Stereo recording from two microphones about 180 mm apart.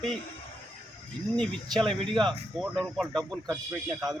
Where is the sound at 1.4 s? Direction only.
5° left (ahead or behind).